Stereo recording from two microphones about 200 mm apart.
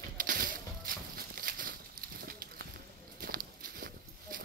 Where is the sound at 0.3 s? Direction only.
45° right (ahead or behind).